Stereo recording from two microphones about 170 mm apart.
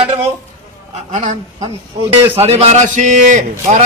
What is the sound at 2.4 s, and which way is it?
A man's voice, 35° right (ahead or behind).